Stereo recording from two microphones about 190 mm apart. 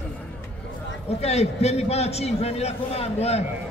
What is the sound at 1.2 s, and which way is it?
A man's voice, 35° left (ahead or behind).